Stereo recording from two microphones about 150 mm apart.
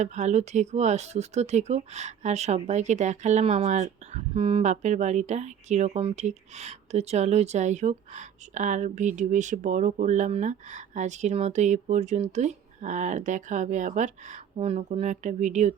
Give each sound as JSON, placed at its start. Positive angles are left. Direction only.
{"t": 0.0, "sound": "speech", "side_deg": -50}
{"t": 14.5, "sound": "speech", "side_deg": -40}